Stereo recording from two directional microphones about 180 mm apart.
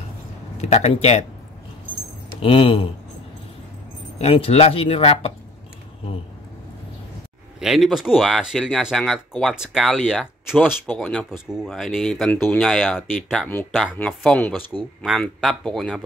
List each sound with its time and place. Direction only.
0.6 s speech: 35° left (ahead or behind)
2.4 s speech: 30° left (ahead or behind)
4.2 s speech: 35° left (ahead or behind)
7.6 s speech: centre (ahead or behind)
13.5 s speech: 10° left (ahead or behind)